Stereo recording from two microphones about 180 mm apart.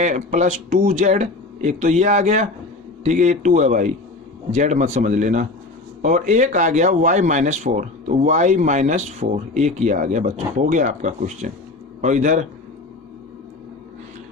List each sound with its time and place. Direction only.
0.0 s speech: 40° right (ahead or behind)